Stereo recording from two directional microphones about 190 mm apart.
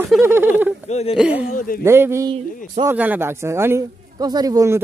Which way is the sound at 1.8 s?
15° right (ahead or behind).